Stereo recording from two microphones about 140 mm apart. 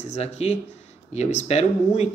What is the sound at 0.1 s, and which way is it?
Speech, 50° left (ahead or behind).